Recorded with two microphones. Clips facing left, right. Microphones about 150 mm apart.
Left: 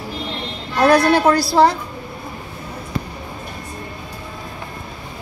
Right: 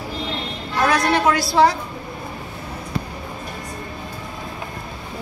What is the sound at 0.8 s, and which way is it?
Speech, 35° left (ahead or behind).